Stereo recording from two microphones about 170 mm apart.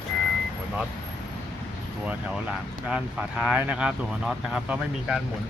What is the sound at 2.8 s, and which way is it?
Speech, 5° right (ahead or behind).